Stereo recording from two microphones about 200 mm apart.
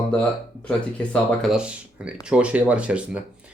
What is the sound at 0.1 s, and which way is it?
Speech, 5° left (ahead or behind).